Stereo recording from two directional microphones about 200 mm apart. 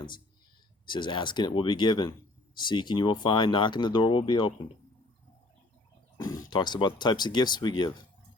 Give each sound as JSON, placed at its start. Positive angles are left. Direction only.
{"t": 0.9, "sound": "speech", "side_deg": 25}
{"t": 6.1, "sound": "speech", "side_deg": 15}